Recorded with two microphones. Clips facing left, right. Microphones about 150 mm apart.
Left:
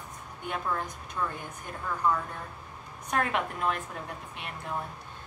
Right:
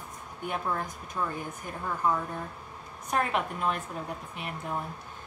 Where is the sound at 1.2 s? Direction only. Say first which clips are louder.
Even; 20° right (ahead or behind).